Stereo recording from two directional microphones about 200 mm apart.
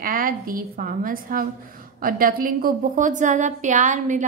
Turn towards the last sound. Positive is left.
turn(degrees=-40)  # may be behind; listen again after turning